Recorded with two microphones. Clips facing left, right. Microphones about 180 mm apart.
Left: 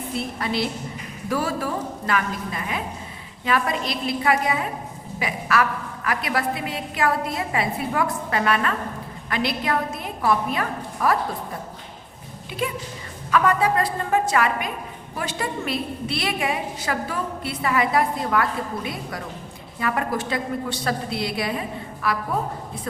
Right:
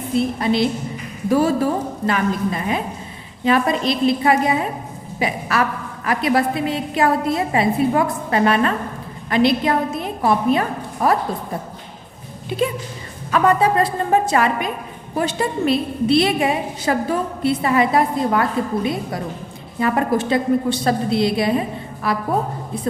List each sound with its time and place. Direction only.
0.1 s a woman's voice: 20° right (ahead or behind)
12.5 s a woman's voice: 25° right (ahead or behind)